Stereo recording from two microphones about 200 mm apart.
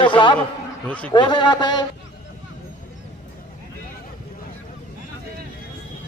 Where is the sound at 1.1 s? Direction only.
20° left (ahead or behind).